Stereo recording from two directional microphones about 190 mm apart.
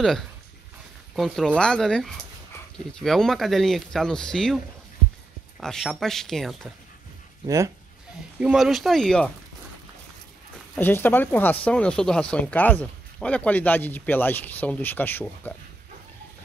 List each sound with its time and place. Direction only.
1.1 s speech: centre (ahead or behind)
5.6 s speech: centre (ahead or behind)
7.4 s speech: 15° right (ahead or behind)
8.4 s speech: 5° right (ahead or behind)
10.8 s speech: 10° left (ahead or behind)